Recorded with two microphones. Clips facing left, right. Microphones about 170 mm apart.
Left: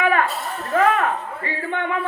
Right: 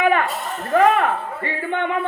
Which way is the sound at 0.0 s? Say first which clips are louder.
Right 1 dB; 25° right (ahead or behind).